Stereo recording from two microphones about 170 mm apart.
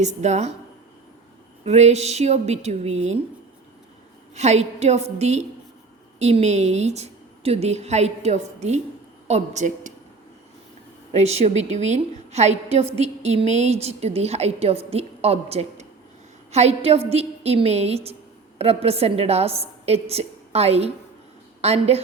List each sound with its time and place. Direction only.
0.0 s a woman's voice: 40° right (ahead or behind)
1.6 s a woman's voice: 40° right (ahead or behind)
4.4 s a woman's voice: 40° right (ahead or behind)
11.1 s a woman's voice: 40° right (ahead or behind)